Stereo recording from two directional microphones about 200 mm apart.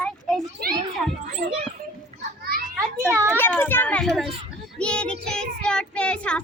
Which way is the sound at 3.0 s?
10° right (ahead or behind).